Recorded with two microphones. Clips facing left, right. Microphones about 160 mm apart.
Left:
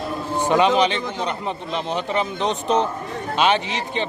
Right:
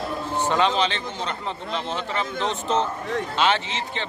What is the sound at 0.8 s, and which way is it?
A man's voice, 15° left (ahead or behind).